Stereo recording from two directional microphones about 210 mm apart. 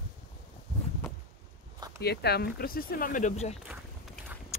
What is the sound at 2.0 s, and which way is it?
Speech, 50° left (ahead or behind).